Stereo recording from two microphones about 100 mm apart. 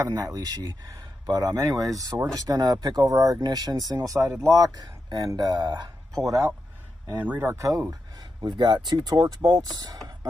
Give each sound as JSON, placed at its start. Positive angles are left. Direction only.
{"t": 0.0, "sound": "speech", "side_deg": -35}
{"t": 7.1, "sound": "speech", "side_deg": -20}
{"t": 7.9, "sound": "speech", "side_deg": -40}